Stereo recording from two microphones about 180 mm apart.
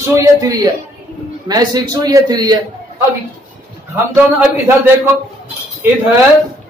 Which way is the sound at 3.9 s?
15° right (ahead or behind).